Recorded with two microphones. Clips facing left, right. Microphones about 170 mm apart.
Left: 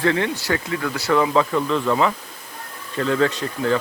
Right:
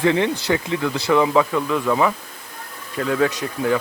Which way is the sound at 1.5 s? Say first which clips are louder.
Even; 5° right (ahead or behind).